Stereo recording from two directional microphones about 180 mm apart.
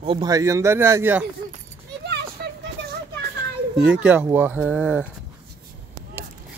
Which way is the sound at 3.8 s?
5° right (ahead or behind).